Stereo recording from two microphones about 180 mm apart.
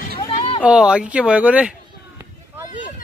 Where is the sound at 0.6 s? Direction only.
5° right (ahead or behind).